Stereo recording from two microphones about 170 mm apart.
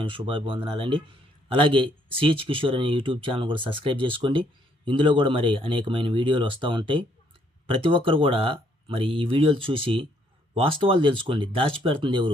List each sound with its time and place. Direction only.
0.0 s speech: 30° right (ahead or behind)